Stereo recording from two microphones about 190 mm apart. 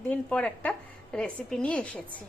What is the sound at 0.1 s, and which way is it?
A woman's voice, 5° left (ahead or behind).